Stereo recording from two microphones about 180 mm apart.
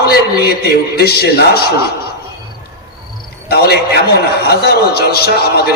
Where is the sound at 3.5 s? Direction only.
65° left (ahead or behind).